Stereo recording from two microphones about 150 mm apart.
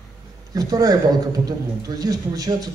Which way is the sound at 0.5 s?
25° right (ahead or behind).